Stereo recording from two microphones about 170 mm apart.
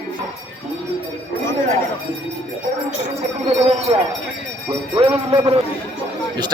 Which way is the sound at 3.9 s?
30° right (ahead or behind).